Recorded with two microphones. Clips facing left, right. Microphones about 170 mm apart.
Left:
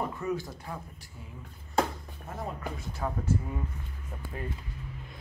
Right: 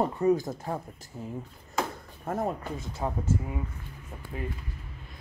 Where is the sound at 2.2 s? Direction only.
50° right (ahead or behind).